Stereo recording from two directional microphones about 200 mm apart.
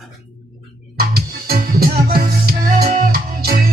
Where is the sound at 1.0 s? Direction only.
50° right (ahead or behind).